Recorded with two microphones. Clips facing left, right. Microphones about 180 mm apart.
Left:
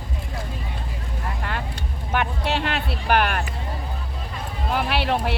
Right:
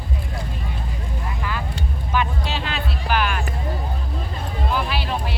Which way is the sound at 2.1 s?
60° left (ahead or behind).